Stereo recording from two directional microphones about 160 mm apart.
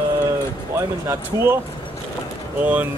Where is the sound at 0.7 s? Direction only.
15° right (ahead or behind).